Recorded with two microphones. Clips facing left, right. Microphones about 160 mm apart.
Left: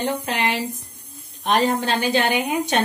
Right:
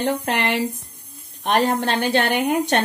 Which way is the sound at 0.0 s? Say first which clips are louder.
Right 2 dB; 60° right (ahead or behind).